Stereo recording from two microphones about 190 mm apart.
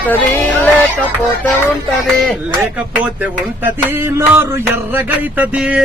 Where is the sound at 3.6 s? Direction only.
10° right (ahead or behind).